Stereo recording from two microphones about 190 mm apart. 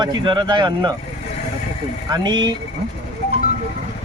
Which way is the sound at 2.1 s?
25° right (ahead or behind).